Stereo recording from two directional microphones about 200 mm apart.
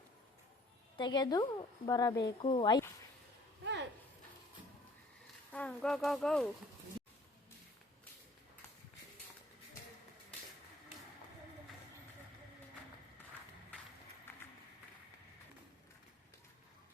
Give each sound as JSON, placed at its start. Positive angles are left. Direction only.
{"t": 0.9, "sound": "a woman's voice", "side_deg": 20}
{"t": 3.6, "sound": "a sound", "side_deg": -60}
{"t": 5.5, "sound": "speech", "side_deg": 10}